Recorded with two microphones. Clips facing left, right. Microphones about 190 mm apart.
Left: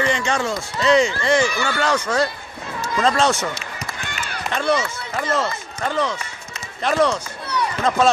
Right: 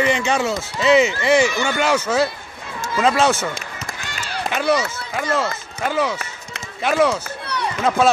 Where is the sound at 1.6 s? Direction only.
15° right (ahead or behind).